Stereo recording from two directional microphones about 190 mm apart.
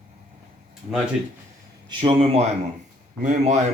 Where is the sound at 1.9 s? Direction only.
30° right (ahead or behind).